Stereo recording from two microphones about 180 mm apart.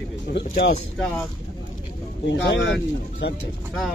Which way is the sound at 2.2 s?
80° left.